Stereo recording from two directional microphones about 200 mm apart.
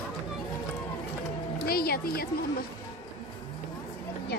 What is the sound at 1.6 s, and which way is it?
Music, 50° left (ahead or behind).